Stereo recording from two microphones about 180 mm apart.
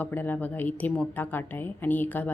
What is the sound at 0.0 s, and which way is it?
A woman's voice, 10° left (ahead or behind).